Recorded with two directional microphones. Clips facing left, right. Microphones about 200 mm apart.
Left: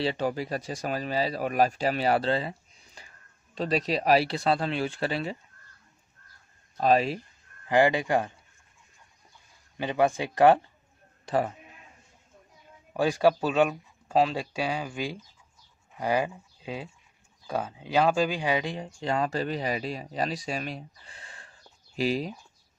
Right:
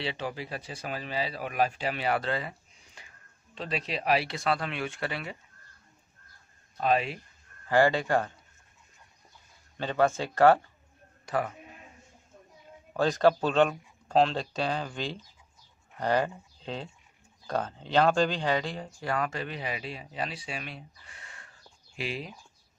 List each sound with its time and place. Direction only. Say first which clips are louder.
0.0 s speech: left 6 dB; 40° left (ahead or behind)
6.8 s speech: left 4 dB; 35° left (ahead or behind)
7.6 s speech: left 1 dB; 15° left (ahead or behind)
9.8 s speech: left 1 dB; 15° left (ahead or behind)
11.2 s a man's voice: left 4 dB; 30° left (ahead or behind)
12.9 s speech: left 1 dB; 10° left (ahead or behind)
18.9 s speech: left 3 dB; 25° left (ahead or behind)